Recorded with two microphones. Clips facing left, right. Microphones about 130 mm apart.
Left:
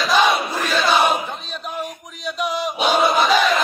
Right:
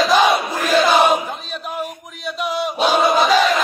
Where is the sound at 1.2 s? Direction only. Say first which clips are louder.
Right 2 dB; 5° right (ahead or behind).